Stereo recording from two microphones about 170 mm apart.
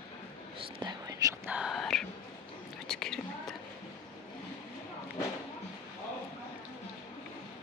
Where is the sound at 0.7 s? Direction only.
25° right (ahead or behind).